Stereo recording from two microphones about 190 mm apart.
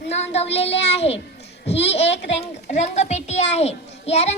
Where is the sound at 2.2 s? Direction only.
35° left (ahead or behind).